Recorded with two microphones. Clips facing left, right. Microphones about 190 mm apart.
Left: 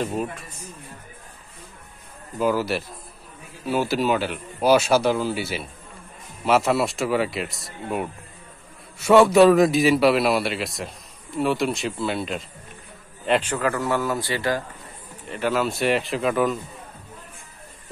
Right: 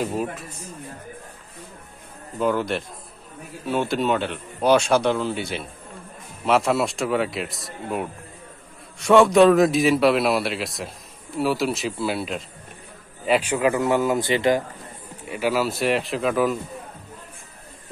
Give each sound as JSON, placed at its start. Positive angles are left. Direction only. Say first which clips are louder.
{"t": 0.0, "sound": "a man's voice", "louder": "right 1 dB", "side_deg": 0}
{"t": 2.3, "sound": "a man's voice", "louder": "even", "side_deg": 5}
{"t": 15.2, "sound": "a man's voice", "louder": "right 1 dB", "side_deg": -10}